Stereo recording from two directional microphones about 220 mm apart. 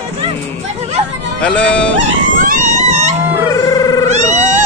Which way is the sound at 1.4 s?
5° left (ahead or behind).